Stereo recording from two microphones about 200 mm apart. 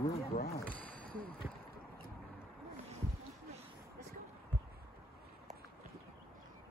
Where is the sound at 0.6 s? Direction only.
10° left (ahead or behind).